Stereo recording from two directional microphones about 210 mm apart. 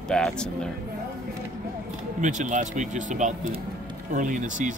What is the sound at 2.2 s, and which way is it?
Speech, 35° right (ahead or behind).